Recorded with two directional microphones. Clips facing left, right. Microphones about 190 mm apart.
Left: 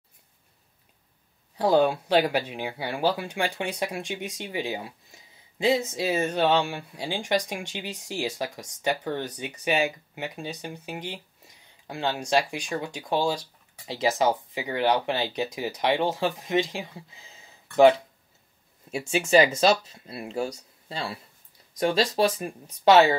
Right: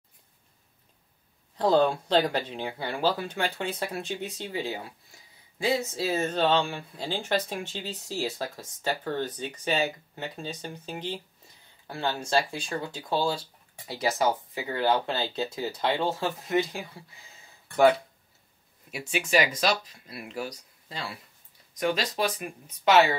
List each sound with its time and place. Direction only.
1.6 s speech: 10° left (ahead or behind)
18.9 s speech: 30° left (ahead or behind)